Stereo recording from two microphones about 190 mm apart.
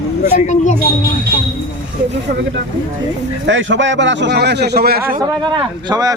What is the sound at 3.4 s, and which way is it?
A man's voice, 75° right (ahead or behind).